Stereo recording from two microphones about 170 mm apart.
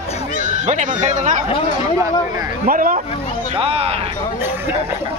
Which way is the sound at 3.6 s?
35° right (ahead or behind).